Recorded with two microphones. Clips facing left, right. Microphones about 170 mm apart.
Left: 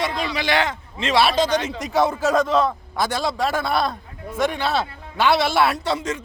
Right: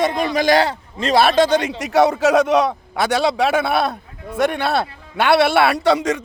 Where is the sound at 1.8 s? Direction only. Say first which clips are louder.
Right 6 dB; 75° right (ahead or behind).